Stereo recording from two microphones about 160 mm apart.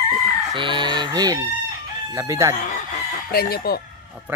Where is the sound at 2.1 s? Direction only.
15° right (ahead or behind).